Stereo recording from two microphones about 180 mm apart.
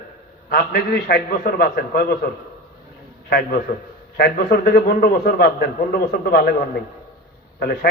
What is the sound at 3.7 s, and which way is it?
A man's voice, 55° left (ahead or behind).